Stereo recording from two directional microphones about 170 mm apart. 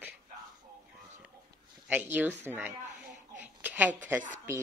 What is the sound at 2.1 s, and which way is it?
A woman's voice, 10° right (ahead or behind).